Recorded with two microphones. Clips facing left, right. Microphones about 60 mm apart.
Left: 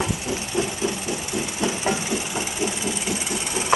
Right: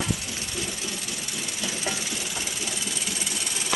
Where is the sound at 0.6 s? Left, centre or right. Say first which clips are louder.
Left 10 dB; left.